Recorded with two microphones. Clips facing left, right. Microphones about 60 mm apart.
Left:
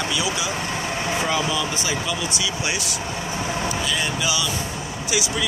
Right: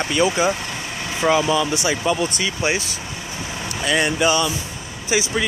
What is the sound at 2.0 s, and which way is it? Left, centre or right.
Speech, right.